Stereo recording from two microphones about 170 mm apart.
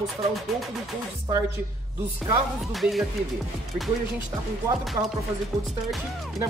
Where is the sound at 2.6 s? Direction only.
Centre (ahead or behind).